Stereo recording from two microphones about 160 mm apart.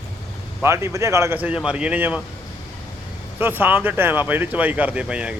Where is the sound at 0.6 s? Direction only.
15° right (ahead or behind).